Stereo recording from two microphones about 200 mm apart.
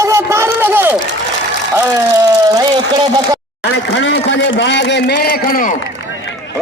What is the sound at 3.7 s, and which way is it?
Speech, 60° left (ahead or behind).